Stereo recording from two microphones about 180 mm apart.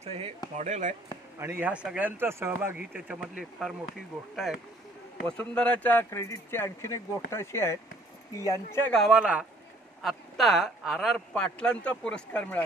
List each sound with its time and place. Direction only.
0.0 s speech: 35° right (ahead or behind)
1.4 s speech: 10° right (ahead or behind)
5.5 s speech: 5° left (ahead or behind)